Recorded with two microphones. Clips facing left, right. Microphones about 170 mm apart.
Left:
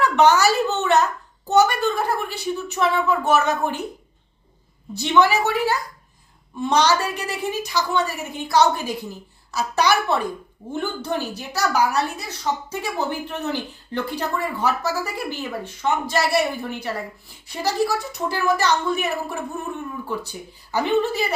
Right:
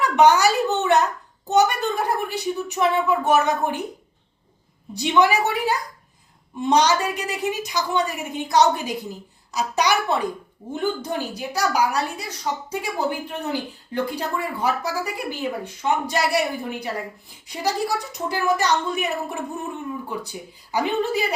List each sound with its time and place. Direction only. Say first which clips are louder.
0.0 s a woman's voice: even; 15° right (ahead or behind)
4.9 s a woman's voice: left 1 dB; 15° right (ahead or behind)
17.5 s a woman's voice: left 2 dB; 15° right (ahead or behind)